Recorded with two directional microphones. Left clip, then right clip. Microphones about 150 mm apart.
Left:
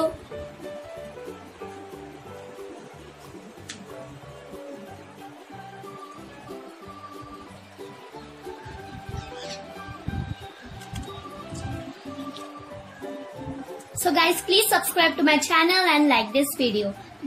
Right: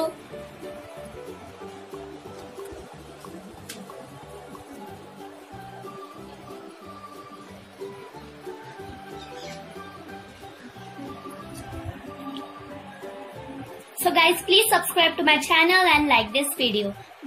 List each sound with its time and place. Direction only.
14.1 s a woman's voice: 40° left (ahead or behind)